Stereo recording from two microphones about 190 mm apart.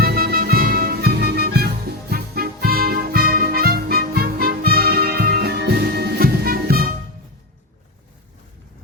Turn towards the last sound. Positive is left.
turn(degrees=-50)  # may be behind; listen again after turning